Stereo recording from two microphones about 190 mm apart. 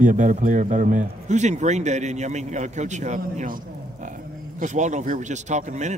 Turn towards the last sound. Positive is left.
turn(degrees=-40)  # may be behind; listen again after turning